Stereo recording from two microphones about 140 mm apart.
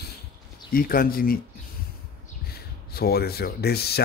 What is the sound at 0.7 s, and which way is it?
Speech, 90° left.